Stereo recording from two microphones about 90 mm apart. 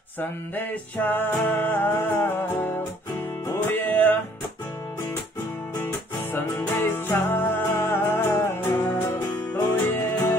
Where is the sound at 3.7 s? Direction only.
20° left (ahead or behind).